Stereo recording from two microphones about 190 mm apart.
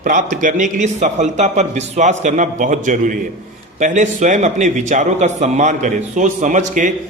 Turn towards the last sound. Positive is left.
turn(degrees=-40)  # may be behind; listen again after turning